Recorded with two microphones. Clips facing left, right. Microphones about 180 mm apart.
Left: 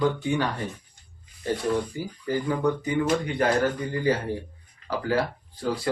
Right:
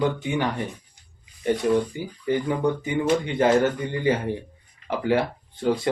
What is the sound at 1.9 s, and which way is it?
Speech, 20° right (ahead or behind).